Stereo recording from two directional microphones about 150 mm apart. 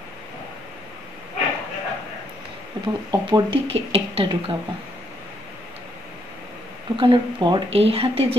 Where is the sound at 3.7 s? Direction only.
40° right (ahead or behind).